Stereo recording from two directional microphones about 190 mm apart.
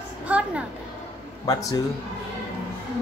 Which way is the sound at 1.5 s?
20° left (ahead or behind).